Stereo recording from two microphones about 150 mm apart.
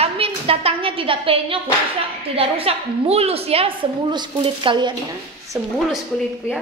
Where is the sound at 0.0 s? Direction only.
40° right (ahead or behind).